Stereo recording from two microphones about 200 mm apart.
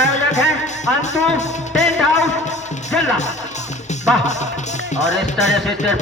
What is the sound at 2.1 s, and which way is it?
Music, 35° left (ahead or behind).